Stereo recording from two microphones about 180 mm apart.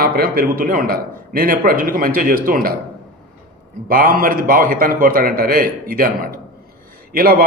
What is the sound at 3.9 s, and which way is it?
A man's voice, 50° right (ahead or behind).